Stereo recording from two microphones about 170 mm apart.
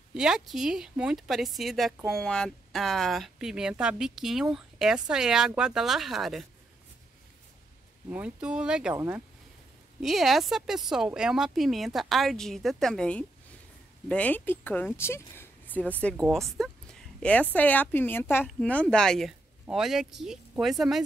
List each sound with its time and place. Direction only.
0.1 s speech: 5° right (ahead or behind)
8.1 s speech: 5° right (ahead or behind)
8.9 s speech: 15° right (ahead or behind)
10.0 s speech: centre (ahead or behind)
16.5 s a sound: 5° left (ahead or behind)
17.6 s speech: 10° left (ahead or behind)